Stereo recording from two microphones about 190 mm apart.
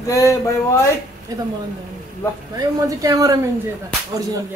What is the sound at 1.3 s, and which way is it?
Speech, 20° right (ahead or behind).